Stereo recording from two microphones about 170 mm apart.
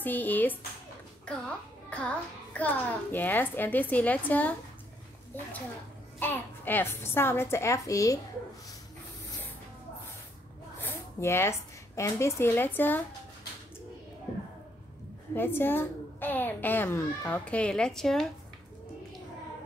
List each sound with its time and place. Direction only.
0.0 s a child's voice: 10° left (ahead or behind)
1.9 s a child's voice: 5° left (ahead or behind)
6.1 s a child's voice: 10° left (ahead or behind)
10.8 s a woman's voice: 15° left (ahead or behind)
15.3 s a child's voice: 10° left (ahead or behind)